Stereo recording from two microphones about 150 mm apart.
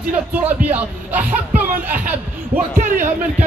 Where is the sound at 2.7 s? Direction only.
65° right (ahead or behind).